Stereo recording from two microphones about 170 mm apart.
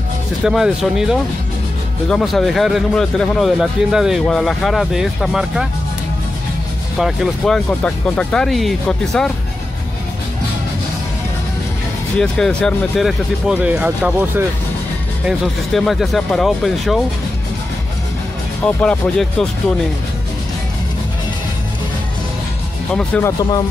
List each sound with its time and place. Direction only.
0.4 s speech: centre (ahead or behind)
7.0 s speech: centre (ahead or behind)
12.2 s speech: 5° left (ahead or behind)
18.8 s speech: 5° left (ahead or behind)
22.9 s speech: 10° left (ahead or behind)